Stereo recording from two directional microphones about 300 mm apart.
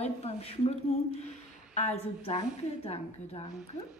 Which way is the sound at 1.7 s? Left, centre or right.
Left.